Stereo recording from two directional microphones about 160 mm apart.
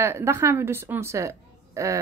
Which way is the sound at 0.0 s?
15° right (ahead or behind).